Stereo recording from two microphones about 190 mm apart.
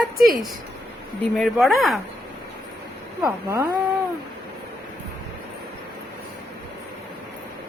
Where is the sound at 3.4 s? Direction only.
15° right (ahead or behind).